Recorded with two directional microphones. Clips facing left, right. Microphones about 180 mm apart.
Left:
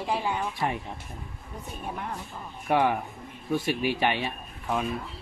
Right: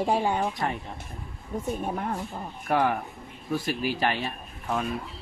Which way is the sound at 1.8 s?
45° right (ahead or behind).